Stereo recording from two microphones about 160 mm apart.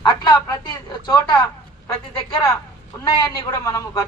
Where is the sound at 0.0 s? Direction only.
25° left (ahead or behind).